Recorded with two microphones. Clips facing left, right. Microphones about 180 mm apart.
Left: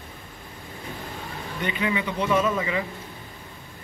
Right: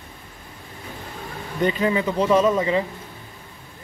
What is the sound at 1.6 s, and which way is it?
Speech, 40° right (ahead or behind).